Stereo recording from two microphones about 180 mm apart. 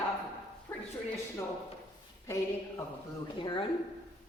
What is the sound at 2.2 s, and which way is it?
Speech, 15° left (ahead or behind).